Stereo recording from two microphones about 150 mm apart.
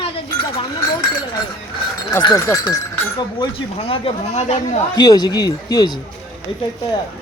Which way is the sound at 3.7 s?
40° left (ahead or behind).